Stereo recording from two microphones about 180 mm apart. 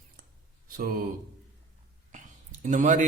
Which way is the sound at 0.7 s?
50° right (ahead or behind).